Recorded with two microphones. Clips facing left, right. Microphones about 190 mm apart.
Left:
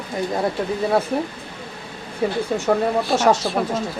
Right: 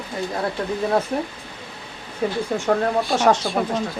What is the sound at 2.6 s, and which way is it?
Speech, 5° left (ahead or behind).